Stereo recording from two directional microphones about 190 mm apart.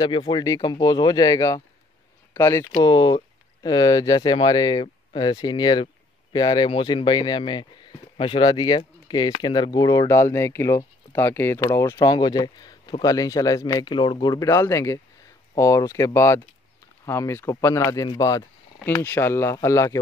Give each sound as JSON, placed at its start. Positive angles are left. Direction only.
{"t": 0.0, "sound": "speech", "side_deg": 25}
{"t": 18.8, "sound": "speech", "side_deg": 10}